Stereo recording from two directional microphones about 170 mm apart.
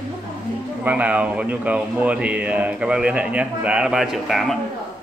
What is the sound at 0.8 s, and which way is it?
Speech, 10° right (ahead or behind).